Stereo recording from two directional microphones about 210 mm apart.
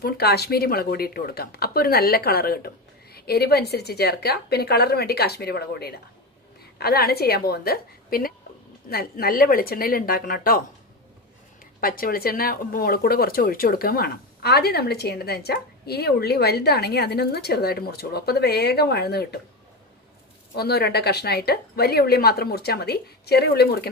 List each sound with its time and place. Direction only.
0.0 s speech: 50° left (ahead or behind)
11.8 s speech: 45° left (ahead or behind)
20.5 s speech: 50° left (ahead or behind)